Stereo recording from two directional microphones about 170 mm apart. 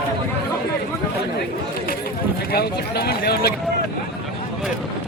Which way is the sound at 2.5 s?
70° left (ahead or behind).